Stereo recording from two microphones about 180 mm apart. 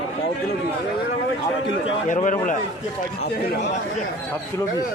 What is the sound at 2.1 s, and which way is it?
Speech, 45° left (ahead or behind).